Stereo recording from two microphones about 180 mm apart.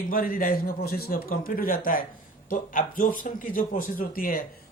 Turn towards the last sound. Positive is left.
turn(degrees=50)  # may be behind; listen again after turning